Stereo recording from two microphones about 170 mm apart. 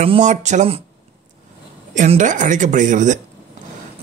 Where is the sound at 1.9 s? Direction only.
50° right (ahead or behind).